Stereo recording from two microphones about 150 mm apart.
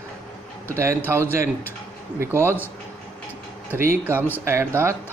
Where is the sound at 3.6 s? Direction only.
15° right (ahead or behind).